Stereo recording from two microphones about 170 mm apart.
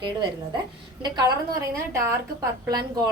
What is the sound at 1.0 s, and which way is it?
Speech, 25° right (ahead or behind).